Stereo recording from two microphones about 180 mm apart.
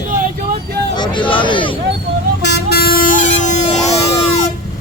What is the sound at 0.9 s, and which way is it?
Speech, 25° left (ahead or behind).